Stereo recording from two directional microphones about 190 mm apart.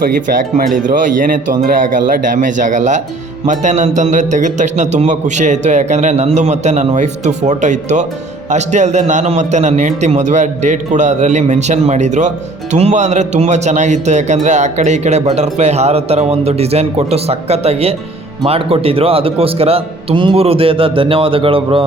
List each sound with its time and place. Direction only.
0.1 s a man's voice: 45° right (ahead or behind); by 21.8 s 30° right (ahead or behind)